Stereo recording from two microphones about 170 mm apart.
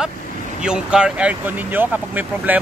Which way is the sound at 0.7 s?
5° right (ahead or behind).